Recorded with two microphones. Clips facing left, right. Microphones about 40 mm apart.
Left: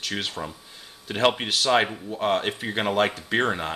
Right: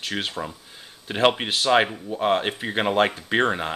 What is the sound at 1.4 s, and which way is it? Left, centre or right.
Speech, right.